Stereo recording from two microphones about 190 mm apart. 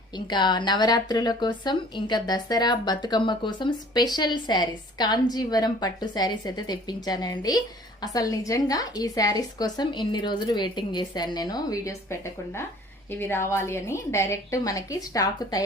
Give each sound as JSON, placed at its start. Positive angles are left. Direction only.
{"t": 0.3, "sound": "speech", "side_deg": 25}
{"t": 13.1, "sound": "a woman's voice", "side_deg": 10}